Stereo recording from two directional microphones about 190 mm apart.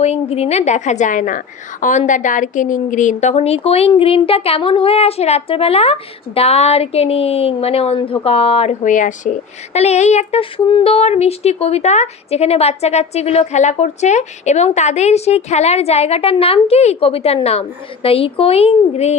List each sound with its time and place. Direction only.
0.0 s a woman's voice: 35° left (ahead or behind)